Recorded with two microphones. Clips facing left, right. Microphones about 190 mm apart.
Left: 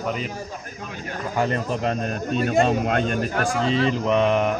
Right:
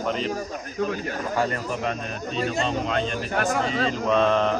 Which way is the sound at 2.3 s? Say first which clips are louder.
Left 6 dB; 55° left (ahead or behind).